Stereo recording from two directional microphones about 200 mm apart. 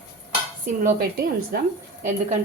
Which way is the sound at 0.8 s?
50° right (ahead or behind).